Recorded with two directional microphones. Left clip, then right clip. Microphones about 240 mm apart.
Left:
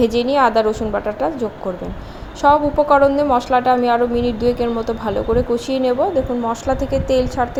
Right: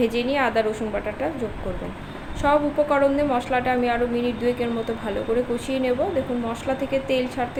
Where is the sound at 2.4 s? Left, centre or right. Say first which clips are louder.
Left 6 dB; left.